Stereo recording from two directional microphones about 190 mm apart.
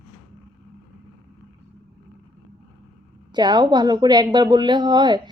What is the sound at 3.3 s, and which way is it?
A woman's voice, 20° right (ahead or behind).